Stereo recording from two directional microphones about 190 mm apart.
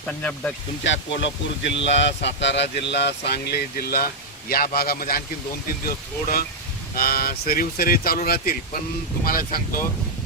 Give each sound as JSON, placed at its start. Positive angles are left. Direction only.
{"t": 0.1, "sound": "speech", "side_deg": 5}
{"t": 0.9, "sound": "speech", "side_deg": 70}
{"t": 6.9, "sound": "speech", "side_deg": 50}